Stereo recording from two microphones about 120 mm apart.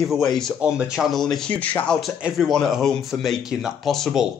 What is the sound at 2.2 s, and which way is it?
A man's voice, centre (ahead or behind).